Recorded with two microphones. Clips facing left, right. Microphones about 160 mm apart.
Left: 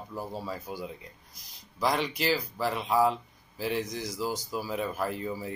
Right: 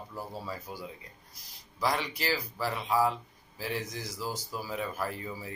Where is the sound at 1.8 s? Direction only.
20° left (ahead or behind).